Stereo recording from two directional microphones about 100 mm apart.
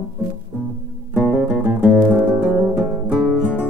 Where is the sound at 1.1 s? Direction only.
15° right (ahead or behind).